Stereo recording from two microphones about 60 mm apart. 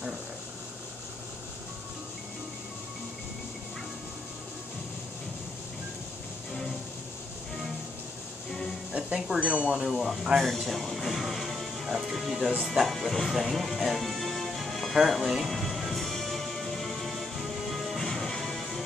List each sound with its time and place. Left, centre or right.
8.5 s music: centre
8.9 s speech: centre
9.8 s speech: centre
15.2 s music: centre